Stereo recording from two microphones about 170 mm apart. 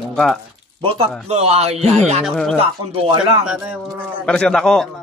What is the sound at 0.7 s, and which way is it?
Speech, 30° right (ahead or behind).